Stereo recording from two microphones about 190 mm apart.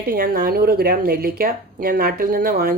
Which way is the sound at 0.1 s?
50° right (ahead or behind).